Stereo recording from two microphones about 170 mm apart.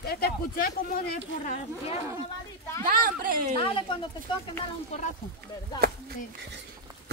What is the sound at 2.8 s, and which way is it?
Speech, 55° right (ahead or behind).